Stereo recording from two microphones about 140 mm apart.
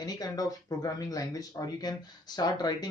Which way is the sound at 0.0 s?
25° left (ahead or behind).